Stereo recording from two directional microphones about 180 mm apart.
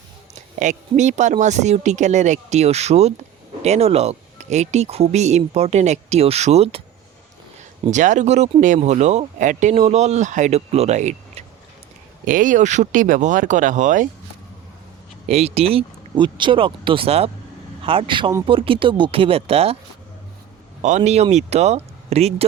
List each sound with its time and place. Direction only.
0.3 s speech: 40° right (ahead or behind)
7.9 s speech: 40° right (ahead or behind)
15.3 s speech: 35° right (ahead or behind)
20.8 s speech: 40° right (ahead or behind)